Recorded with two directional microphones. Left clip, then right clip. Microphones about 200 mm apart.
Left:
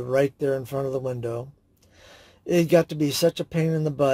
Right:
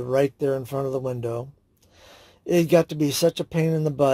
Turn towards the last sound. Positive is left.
turn(degrees=-20)  # may be behind; listen again after turning